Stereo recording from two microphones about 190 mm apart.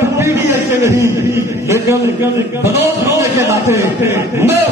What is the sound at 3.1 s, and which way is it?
A man's voice, 15° right (ahead or behind).